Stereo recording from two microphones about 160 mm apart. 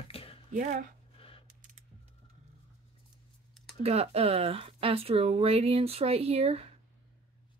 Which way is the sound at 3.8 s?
40° right (ahead or behind).